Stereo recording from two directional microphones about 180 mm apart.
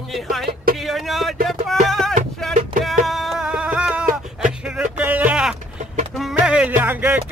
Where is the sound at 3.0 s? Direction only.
Centre (ahead or behind).